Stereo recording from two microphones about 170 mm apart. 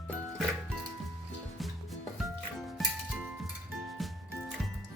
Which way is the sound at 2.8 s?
Centre (ahead or behind).